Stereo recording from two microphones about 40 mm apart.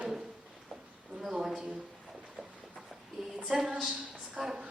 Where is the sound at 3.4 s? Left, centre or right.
Centre.